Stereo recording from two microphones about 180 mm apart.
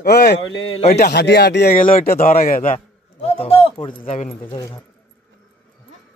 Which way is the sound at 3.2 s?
35° left (ahead or behind).